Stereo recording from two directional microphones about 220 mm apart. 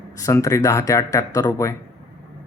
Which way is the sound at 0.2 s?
15° left (ahead or behind).